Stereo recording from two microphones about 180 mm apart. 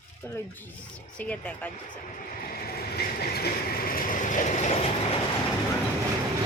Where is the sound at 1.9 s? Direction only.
50° left (ahead or behind).